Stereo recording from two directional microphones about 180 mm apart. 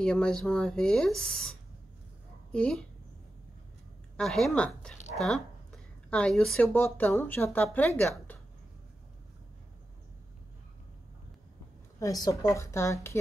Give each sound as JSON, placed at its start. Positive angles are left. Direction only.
{"t": 0.0, "sound": "speech", "side_deg": 5}
{"t": 4.2, "sound": "speech", "side_deg": 0}
{"t": 12.0, "sound": "a woman's voice", "side_deg": 20}